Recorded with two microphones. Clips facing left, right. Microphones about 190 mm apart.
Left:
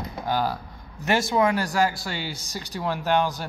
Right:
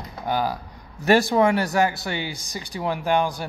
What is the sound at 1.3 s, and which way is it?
Speech, 25° right (ahead or behind).